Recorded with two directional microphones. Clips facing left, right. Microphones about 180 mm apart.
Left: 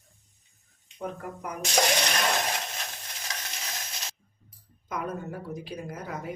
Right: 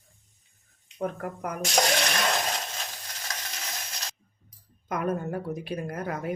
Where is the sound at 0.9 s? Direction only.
55° right (ahead or behind).